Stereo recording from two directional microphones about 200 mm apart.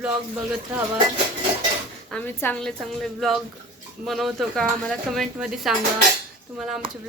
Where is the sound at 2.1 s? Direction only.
10° left (ahead or behind).